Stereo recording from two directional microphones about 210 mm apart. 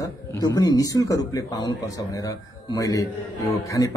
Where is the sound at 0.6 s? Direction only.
15° left (ahead or behind).